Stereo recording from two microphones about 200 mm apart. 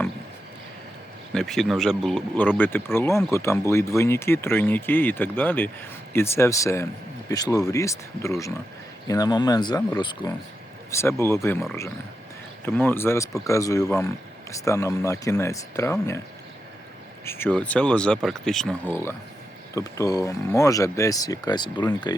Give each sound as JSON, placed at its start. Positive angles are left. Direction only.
{"t": 1.3, "sound": "speech", "side_deg": 0}
{"t": 12.6, "sound": "speech", "side_deg": 10}
{"t": 17.2, "sound": "speech", "side_deg": 10}